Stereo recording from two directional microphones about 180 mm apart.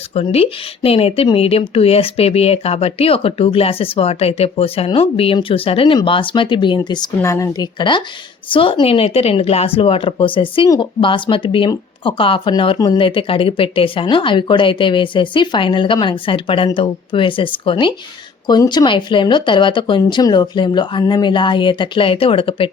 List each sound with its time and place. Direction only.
0.1 s speech: 35° left (ahead or behind)